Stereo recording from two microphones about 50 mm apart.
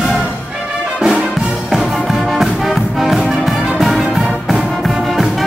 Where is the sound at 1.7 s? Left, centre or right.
Centre.